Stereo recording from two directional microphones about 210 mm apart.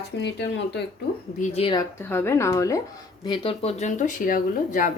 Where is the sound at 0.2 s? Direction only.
55° left (ahead or behind).